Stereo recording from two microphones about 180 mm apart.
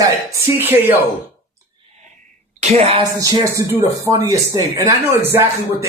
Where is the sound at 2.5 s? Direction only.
40° right (ahead or behind).